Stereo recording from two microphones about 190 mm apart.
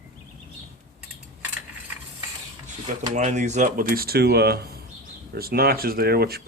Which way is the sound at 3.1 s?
40° right (ahead or behind).